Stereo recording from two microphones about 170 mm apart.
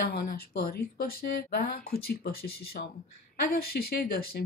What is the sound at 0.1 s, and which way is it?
Speech, 60° left (ahead or behind).